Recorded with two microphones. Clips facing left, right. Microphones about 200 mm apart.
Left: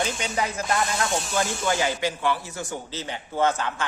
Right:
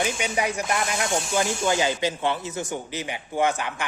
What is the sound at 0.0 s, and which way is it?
Speech, 15° right (ahead or behind).